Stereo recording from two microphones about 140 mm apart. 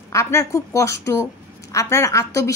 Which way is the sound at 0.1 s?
20° left (ahead or behind).